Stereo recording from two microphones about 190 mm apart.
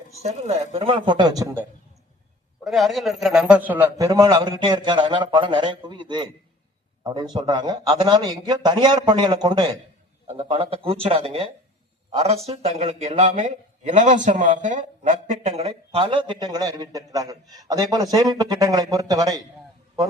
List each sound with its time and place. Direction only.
0.2 s a man's voice: 35° right (ahead or behind); by 1.6 s 15° right (ahead or behind)
2.6 s a man's voice: centre (ahead or behind); by 19.4 s 20° right (ahead or behind)